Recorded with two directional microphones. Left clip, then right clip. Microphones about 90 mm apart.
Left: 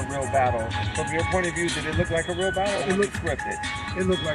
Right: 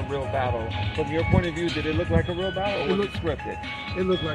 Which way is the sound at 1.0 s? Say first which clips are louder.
Even; 30° right (ahead or behind).